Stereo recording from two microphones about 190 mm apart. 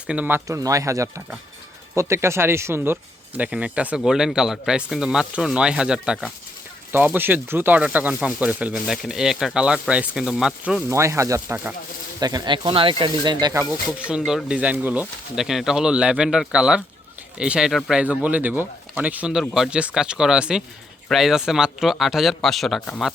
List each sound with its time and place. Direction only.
0.1 s speech: 10° right (ahead or behind)
10.8 s speech: 15° right (ahead or behind)
12.2 s speech: 20° right (ahead or behind)
14.3 s speech: 5° right (ahead or behind)